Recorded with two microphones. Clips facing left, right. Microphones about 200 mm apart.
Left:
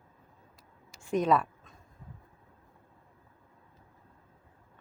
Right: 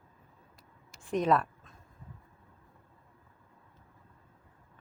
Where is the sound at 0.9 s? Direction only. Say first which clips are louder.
Left 1 dB; centre (ahead or behind).